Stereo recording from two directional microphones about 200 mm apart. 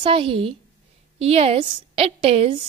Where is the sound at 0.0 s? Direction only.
25° right (ahead or behind).